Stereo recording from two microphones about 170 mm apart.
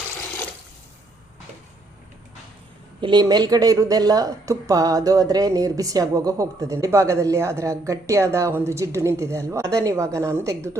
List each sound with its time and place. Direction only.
3.0 s a woman's voice: 25° right (ahead or behind)